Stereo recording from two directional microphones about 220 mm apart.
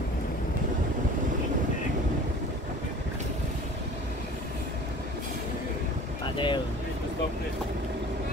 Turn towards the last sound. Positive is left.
turn(degrees=20)  # may be behind; listen again after turning